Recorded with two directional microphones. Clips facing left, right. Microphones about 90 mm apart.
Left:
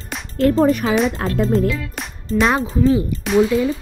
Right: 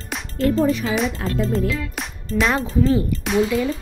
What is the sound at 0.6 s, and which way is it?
Speech, 55° left (ahead or behind).